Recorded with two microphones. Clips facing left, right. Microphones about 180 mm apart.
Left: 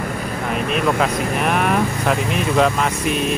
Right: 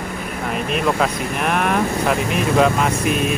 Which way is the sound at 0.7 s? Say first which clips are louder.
Even; centre (ahead or behind).